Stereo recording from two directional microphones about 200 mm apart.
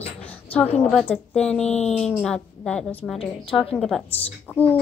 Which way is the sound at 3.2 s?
25° left (ahead or behind).